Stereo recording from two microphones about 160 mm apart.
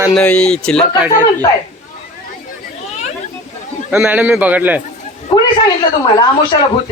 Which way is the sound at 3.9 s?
10° right (ahead or behind).